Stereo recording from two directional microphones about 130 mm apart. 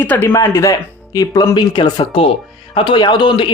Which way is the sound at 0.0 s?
15° left (ahead or behind).